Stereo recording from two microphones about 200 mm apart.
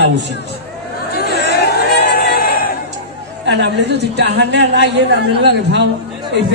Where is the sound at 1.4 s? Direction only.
55° left (ahead or behind).